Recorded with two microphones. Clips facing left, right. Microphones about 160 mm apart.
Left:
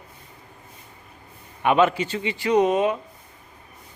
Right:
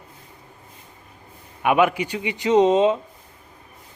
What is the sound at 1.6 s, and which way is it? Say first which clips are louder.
Speech: even; 10° right (ahead or behind).